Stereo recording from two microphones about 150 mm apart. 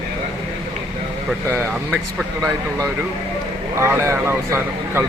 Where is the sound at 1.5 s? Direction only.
5° right (ahead or behind).